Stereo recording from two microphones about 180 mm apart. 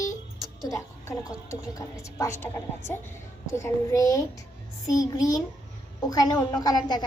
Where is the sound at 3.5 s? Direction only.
15° left (ahead or behind).